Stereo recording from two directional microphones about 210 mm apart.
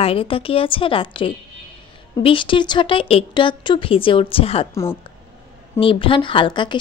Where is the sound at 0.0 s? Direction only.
25° left (ahead or behind).